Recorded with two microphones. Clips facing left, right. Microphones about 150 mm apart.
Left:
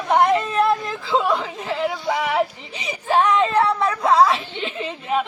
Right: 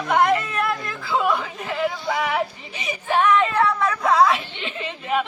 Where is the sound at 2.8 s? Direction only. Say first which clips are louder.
Left 2 dB; 30° left (ahead or behind).